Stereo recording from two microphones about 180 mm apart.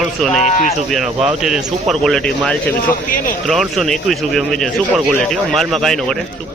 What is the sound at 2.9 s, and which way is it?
Speech, 50° left (ahead or behind).